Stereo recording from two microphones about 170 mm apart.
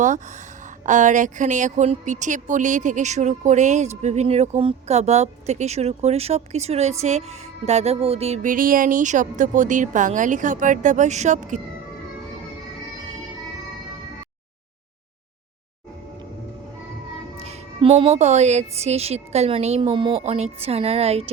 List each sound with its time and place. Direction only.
0.9 s speech: 45° right (ahead or behind)
17.4 s a woman's voice: 35° right (ahead or behind)